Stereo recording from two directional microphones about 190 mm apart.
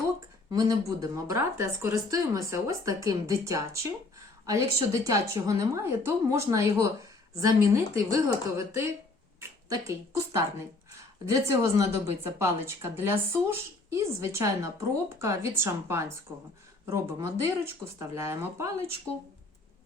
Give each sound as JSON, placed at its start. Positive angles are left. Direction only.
{"t": 0.5, "sound": "speech", "side_deg": -15}
{"t": 7.9, "sound": "speech", "side_deg": -15}